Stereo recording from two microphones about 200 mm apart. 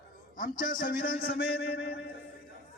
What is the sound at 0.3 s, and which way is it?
A man's voice, 40° left (ahead or behind).